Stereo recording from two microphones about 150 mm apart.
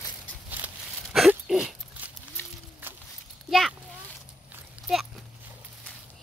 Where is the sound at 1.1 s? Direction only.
Centre (ahead or behind).